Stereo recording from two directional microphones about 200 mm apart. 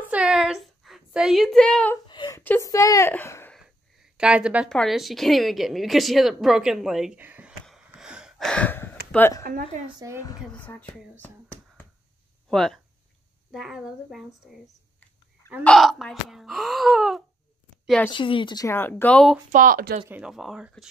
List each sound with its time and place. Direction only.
0.0 s a sound: 5° right (ahead or behind)
2.0 s a sound: 20° left (ahead or behind)
2.4 s a woman's voice: 15° left (ahead or behind)
3.5 s a sound: centre (ahead or behind)
4.7 s a woman's voice: centre (ahead or behind)
9.4 s speech: 45° right (ahead or behind)
9.9 s a woman's voice: 15° right (ahead or behind)
10.4 s speech: 5° left (ahead or behind)
12.4 s speech: centre (ahead or behind)
15.6 s a woman's voice: centre (ahead or behind)
18.1 s speech: 25° left (ahead or behind); by 19.3 s 5° left (ahead or behind)
19.5 s speech: 45° right (ahead or behind)
20.1 s speech: 5° right (ahead or behind)